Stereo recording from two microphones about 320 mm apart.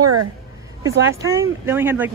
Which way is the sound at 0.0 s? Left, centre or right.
Right.